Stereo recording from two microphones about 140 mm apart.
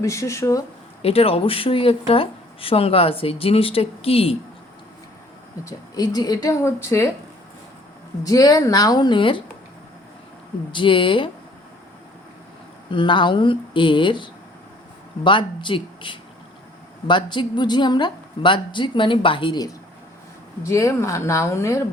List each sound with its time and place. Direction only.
0.0 s a woman's voice: 20° left (ahead or behind)
1.0 s speech: 45° left (ahead or behind)
5.6 s a woman's voice: 25° left (ahead or behind)
8.2 s a woman's voice: 25° left (ahead or behind)
10.7 s a woman's voice: 35° left (ahead or behind)
12.9 s a woman's voice: 35° left (ahead or behind)
20.7 s a woman's voice: 20° left (ahead or behind)